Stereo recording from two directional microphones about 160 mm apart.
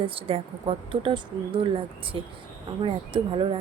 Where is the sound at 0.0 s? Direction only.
35° right (ahead or behind).